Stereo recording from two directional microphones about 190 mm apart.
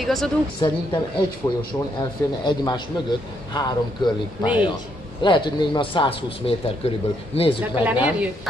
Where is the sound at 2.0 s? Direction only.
25° left (ahead or behind).